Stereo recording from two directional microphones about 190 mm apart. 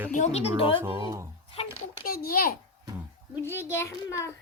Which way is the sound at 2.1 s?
50° left (ahead or behind).